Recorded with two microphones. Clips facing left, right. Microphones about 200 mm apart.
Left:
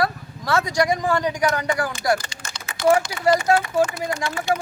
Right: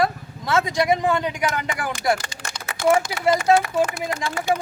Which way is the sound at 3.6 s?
85° right.